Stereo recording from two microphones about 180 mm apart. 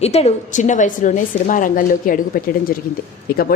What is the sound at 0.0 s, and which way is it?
A woman's voice, 35° left (ahead or behind).